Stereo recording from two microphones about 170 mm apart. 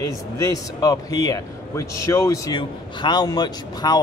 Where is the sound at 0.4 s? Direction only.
20° left (ahead or behind).